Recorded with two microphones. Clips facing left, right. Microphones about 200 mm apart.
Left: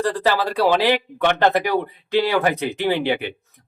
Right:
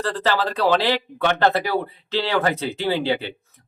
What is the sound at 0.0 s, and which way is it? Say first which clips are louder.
A man's voice: left 2 dB; 10° left (ahead or behind).